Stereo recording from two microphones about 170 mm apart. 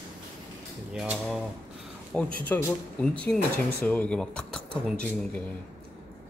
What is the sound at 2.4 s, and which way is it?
Speech, 10° left (ahead or behind).